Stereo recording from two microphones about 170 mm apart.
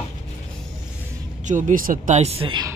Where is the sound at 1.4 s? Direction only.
50° right (ahead or behind); by 2.6 s 30° right (ahead or behind).